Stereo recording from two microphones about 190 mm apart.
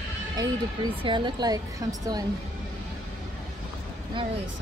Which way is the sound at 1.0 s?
25° right (ahead or behind).